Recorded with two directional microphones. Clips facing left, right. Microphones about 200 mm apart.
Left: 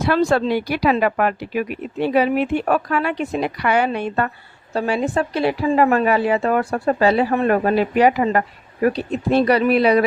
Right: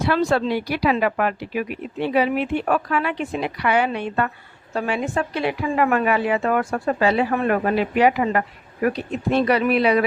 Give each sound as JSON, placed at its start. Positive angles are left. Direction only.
{"t": 0.0, "sound": "a woman's voice", "side_deg": 45}